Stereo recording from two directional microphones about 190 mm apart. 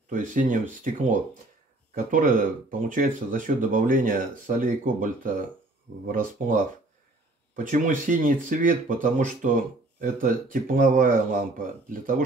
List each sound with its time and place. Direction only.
0.1 s speech: 45° right (ahead or behind)